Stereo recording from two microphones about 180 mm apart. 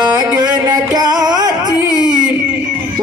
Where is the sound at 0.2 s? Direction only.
20° right (ahead or behind).